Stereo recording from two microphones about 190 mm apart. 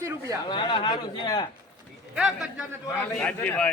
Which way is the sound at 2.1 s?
5° right (ahead or behind).